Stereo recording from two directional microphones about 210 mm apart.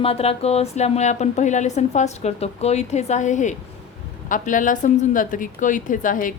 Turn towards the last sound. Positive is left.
turn(degrees=40)  # may be behind; listen again after turning